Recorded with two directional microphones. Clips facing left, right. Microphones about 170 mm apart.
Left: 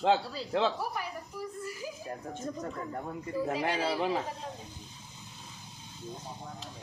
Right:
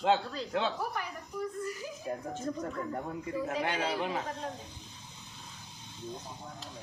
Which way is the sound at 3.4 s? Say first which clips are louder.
Left 2 dB; 35° left (ahead or behind).